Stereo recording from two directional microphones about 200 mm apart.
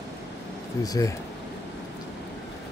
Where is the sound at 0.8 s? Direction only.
20° left (ahead or behind).